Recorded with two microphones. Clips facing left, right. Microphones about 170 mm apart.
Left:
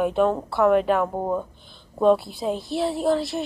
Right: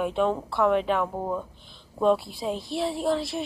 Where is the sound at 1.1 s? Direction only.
20° left (ahead or behind).